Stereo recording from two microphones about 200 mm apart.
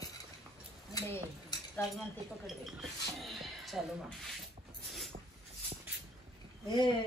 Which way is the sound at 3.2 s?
Centre (ahead or behind).